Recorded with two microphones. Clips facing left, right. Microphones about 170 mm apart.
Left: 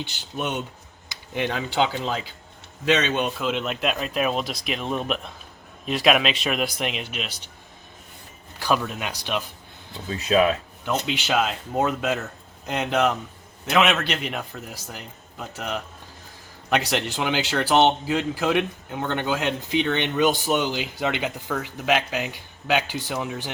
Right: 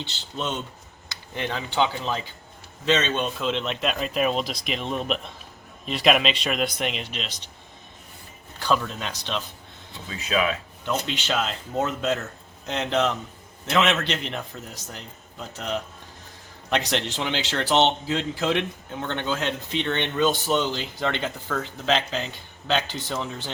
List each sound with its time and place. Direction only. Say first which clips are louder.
0.0 s speech: left 2 dB; 15° left (ahead or behind)
1.1 s a sound: left 3 dB; 15° left (ahead or behind)
2.8 s a man's voice: left 1 dB; 15° left (ahead or behind)
8.5 s speech: left 1 dB; 10° left (ahead or behind)
10.1 s speech: left 5 dB; 40° left (ahead or behind)
10.8 s speech: left 2 dB; 10° left (ahead or behind)
16.6 s speech: left 2 dB; 5° left (ahead or behind)